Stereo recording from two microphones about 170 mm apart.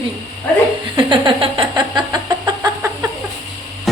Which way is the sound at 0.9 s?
30° right (ahead or behind).